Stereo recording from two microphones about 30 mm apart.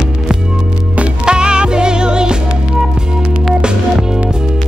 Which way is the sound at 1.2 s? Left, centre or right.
Right.